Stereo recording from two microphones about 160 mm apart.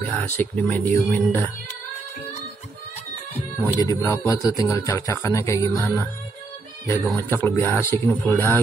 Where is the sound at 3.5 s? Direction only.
20° left (ahead or behind).